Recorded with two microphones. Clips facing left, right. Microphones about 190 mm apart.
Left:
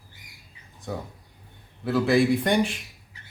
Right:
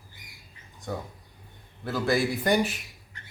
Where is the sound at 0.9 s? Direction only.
5° left (ahead or behind).